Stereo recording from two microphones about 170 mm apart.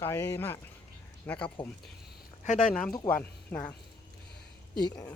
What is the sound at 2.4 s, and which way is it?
Speech, 45° left (ahead or behind).